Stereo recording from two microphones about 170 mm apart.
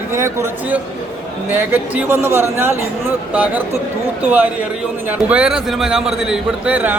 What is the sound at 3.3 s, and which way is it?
A man's voice, 10° right (ahead or behind).